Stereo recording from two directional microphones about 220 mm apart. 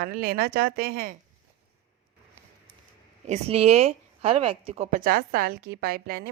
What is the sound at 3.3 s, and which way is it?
A woman's voice, 30° right (ahead or behind).